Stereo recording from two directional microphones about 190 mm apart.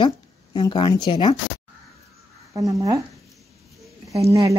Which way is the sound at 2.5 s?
15° right (ahead or behind).